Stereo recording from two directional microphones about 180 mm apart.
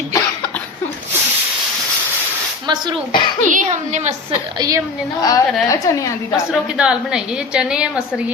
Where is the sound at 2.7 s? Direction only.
25° right (ahead or behind).